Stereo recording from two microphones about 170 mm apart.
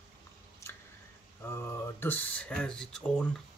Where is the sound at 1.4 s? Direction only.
15° left (ahead or behind).